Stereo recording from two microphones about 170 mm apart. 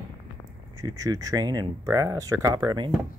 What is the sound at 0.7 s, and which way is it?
Speech, 20° right (ahead or behind).